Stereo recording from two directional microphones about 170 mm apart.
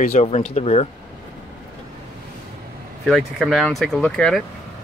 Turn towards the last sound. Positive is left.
turn(degrees=5)  # may be behind; listen again after turning